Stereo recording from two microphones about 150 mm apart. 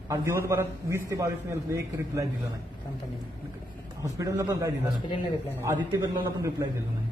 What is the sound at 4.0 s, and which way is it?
A man's voice, 20° right (ahead or behind).